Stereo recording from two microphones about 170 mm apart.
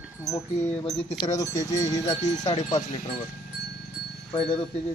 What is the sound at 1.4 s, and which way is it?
Speech, 20° left (ahead or behind).